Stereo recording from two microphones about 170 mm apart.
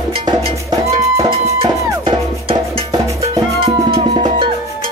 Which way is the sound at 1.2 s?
25° right (ahead or behind).